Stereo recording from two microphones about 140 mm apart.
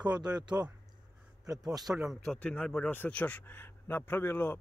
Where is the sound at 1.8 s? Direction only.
Centre (ahead or behind); by 4.5 s 15° left (ahead or behind).